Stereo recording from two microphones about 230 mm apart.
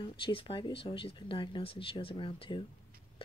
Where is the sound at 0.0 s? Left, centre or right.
Left.